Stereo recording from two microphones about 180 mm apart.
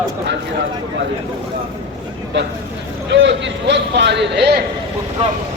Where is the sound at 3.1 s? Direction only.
80° right.